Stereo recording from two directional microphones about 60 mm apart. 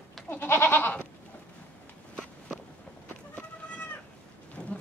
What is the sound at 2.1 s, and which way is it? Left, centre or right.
Walk, centre.